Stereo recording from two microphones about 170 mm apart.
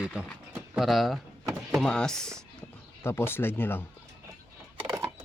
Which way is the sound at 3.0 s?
15° left (ahead or behind).